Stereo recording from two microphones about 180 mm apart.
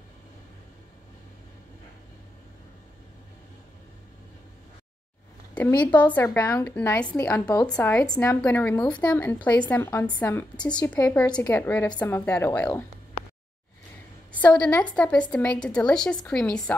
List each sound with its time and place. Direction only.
5.9 s a woman's voice: 10° left (ahead or behind)
8.0 s a woman's voice: 20° left (ahead or behind)
14.3 s a woman's voice: 5° left (ahead or behind)